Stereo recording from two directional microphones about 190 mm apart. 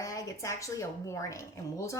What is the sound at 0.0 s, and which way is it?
A woman's voice, 15° left (ahead or behind).